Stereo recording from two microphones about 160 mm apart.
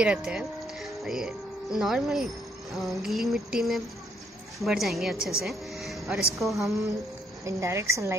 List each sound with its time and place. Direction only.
0.0 s speech: 5° right (ahead or behind)
2.7 s music: centre (ahead or behind)
5.4 s speech: centre (ahead or behind)
6.4 s music: centre (ahead or behind)
7.4 s a woman's voice: 20° right (ahead or behind)